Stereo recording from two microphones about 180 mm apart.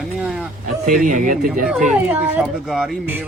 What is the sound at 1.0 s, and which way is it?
Speech, 45° right (ahead or behind).